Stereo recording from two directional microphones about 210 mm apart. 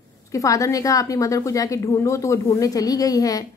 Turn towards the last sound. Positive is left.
turn(degrees=15)  # may be behind; listen again after turning